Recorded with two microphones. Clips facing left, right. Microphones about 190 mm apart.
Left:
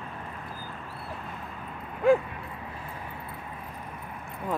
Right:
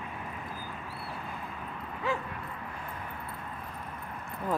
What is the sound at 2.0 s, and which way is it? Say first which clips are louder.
Speech: left 12 dB; 50° left (ahead or behind).